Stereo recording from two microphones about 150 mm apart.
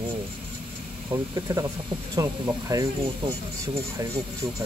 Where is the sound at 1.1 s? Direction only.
20° right (ahead or behind).